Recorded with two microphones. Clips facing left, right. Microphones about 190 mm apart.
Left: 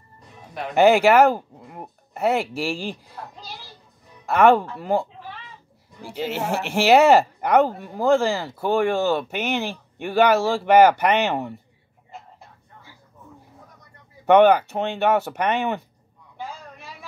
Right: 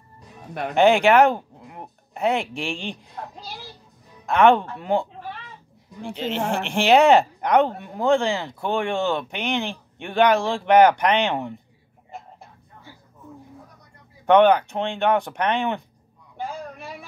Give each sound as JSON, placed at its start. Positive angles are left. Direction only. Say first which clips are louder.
{"t": 0.7, "sound": "speech", "louder": "left 1 dB", "side_deg": 5}
{"t": 4.3, "sound": "speech", "louder": "even", "side_deg": 5}
{"t": 6.0, "sound": "speech", "louder": "right 1 dB", "side_deg": 5}
{"t": 14.2, "sound": "speech", "louder": "left 1 dB", "side_deg": 10}